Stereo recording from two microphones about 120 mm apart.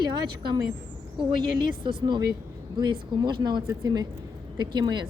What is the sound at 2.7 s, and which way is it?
Speech, 40° right (ahead or behind).